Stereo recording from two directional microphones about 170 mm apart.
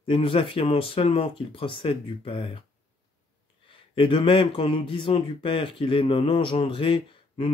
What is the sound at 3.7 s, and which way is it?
Speech, 30° left (ahead or behind).